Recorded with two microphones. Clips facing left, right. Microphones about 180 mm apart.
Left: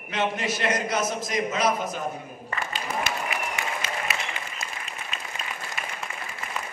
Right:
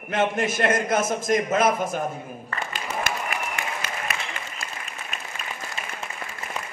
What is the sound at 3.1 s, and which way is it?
Applause, 50° right (ahead or behind).